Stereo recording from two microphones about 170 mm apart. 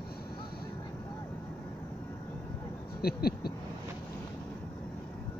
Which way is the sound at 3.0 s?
65° left (ahead or behind).